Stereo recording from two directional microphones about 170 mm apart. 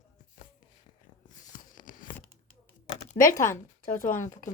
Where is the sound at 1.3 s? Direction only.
50° left (ahead or behind).